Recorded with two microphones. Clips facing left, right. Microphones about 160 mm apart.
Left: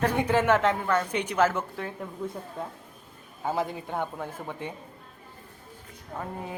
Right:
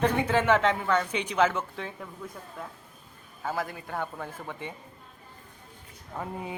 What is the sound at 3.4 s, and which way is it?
A man's voice, 20° left (ahead or behind).